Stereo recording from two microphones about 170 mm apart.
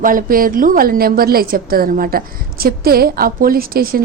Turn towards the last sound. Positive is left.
turn(degrees=-60)  # may be behind; listen again after turning